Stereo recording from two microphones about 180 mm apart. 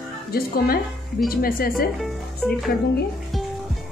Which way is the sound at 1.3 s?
55° left (ahead or behind).